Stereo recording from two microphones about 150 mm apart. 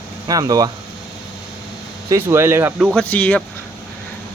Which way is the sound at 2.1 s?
15° right (ahead or behind).